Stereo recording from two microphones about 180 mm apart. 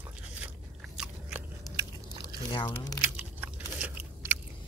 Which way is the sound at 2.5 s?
25° left (ahead or behind).